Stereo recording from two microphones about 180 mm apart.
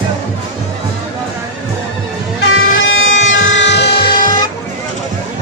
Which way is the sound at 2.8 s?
90° left.